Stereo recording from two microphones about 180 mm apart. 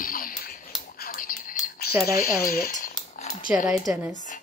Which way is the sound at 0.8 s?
55° left (ahead or behind).